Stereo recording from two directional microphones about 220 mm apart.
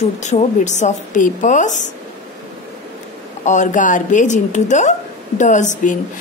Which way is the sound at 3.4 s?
35° left (ahead or behind).